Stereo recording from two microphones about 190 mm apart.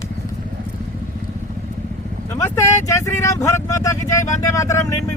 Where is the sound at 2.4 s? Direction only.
15° left (ahead or behind).